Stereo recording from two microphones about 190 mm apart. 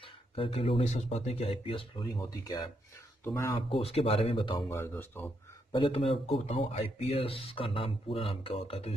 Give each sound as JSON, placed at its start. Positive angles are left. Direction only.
{"t": 0.0, "sound": "speech", "side_deg": 30}
{"t": 3.6, "sound": "speech", "side_deg": 30}
{"t": 4.6, "sound": "speech", "side_deg": 15}
{"t": 5.7, "sound": "speech", "side_deg": 30}